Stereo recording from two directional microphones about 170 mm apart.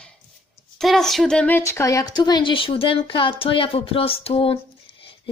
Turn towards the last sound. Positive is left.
turn(degrees=35)  # may be behind; listen again after turning